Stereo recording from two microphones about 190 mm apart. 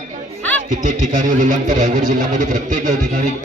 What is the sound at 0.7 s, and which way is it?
Speech, 40° right (ahead or behind).